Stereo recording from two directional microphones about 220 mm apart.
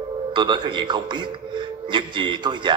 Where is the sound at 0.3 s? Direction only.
20° right (ahead or behind).